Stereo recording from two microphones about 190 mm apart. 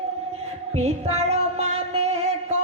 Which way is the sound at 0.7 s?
35° right (ahead or behind).